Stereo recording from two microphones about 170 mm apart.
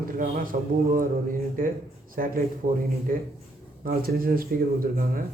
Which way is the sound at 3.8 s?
60° right (ahead or behind).